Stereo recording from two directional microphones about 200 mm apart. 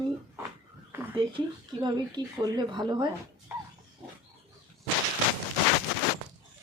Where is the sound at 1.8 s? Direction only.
20° right (ahead or behind).